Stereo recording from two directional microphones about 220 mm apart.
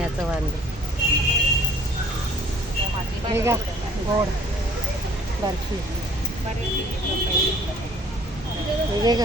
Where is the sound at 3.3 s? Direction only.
10° right (ahead or behind).